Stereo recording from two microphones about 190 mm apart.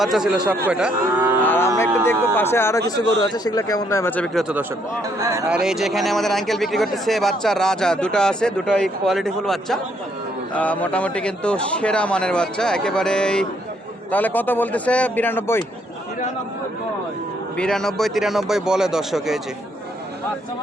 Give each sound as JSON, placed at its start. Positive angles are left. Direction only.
{"t": 0.0, "sound": "speech", "side_deg": 0}
{"t": 1.4, "sound": "a sound", "side_deg": 10}
{"t": 2.3, "sound": "a man's voice", "side_deg": 10}
{"t": 5.2, "sound": "speech", "side_deg": -15}
{"t": 5.5, "sound": "a man's voice", "side_deg": -5}
{"t": 17.6, "sound": "speech", "side_deg": 5}